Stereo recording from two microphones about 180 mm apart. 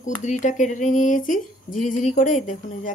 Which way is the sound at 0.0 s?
45° left (ahead or behind).